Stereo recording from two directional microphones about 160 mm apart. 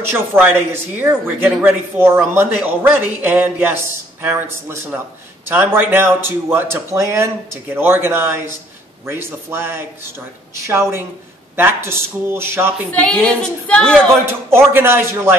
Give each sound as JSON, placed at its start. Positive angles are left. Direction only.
{"t": 0.1, "sound": "a man's voice", "side_deg": -15}
{"t": 12.9, "sound": "a woman's voice", "side_deg": 5}
{"t": 14.2, "sound": "a man's voice", "side_deg": -15}